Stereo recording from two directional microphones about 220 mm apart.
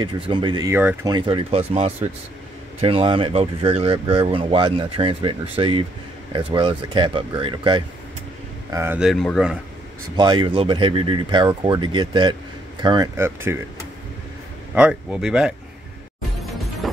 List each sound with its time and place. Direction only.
0.0 s speech: 20° right (ahead or behind)
1.1 s speech: 25° right (ahead or behind)
8.6 s speech: 10° right (ahead or behind)
10.1 s speech: 20° right (ahead or behind)
14.8 s speech: 5° right (ahead or behind)
16.8 s music: centre (ahead or behind)